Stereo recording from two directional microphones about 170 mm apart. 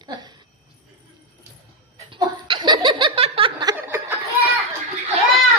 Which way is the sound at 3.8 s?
15° right (ahead or behind).